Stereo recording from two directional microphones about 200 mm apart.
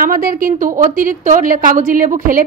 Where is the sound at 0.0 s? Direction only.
45° right (ahead or behind).